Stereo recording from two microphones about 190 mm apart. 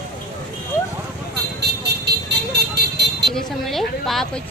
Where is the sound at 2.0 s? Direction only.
60° right (ahead or behind).